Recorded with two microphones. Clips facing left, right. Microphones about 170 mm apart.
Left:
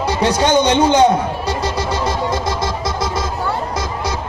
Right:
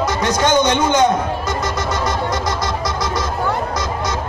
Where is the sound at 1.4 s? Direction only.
30° left (ahead or behind).